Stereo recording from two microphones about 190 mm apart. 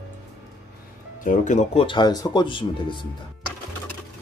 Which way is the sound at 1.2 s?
40° left (ahead or behind).